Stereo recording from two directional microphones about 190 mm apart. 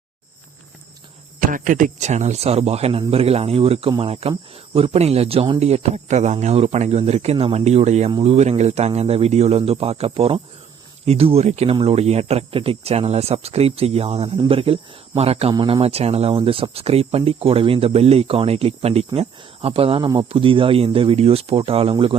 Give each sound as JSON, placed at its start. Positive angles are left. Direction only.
{"t": 1.4, "sound": "speech", "side_deg": -45}